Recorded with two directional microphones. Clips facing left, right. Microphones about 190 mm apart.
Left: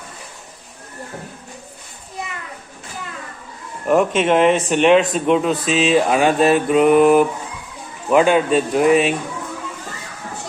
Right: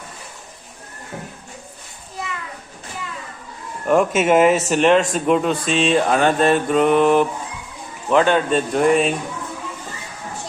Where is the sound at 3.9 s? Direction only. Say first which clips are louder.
Even; 5° right (ahead or behind).